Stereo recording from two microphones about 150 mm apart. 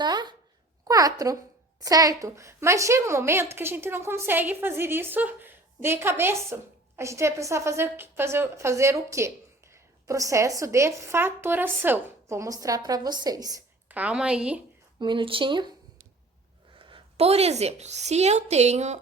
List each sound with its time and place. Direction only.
0.0 s a sound: 30° right (ahead or behind)
0.9 s a woman's voice: 25° right (ahead or behind)
13.8 s a woman's voice: 10° right (ahead or behind)
14.9 s speech: 30° right (ahead or behind)
16.7 s a woman's voice: 40° right (ahead or behind)